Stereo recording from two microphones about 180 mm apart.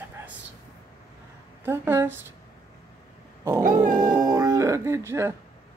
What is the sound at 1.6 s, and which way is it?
Speech, 15° right (ahead or behind).